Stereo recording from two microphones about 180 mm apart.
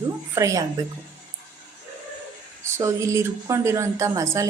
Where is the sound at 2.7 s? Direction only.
15° right (ahead or behind).